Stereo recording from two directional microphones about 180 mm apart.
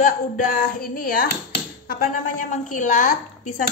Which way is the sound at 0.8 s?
50° left (ahead or behind).